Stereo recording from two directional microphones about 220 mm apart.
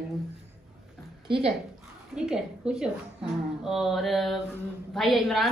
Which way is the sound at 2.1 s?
Centre (ahead or behind).